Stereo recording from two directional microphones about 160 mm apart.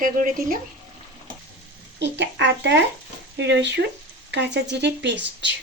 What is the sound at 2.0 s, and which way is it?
Speech, 90° right.